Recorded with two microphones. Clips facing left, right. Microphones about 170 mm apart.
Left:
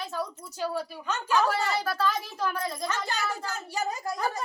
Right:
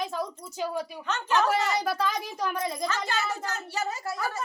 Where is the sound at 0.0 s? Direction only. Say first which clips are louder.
Right 2 dB; 10° right (ahead or behind).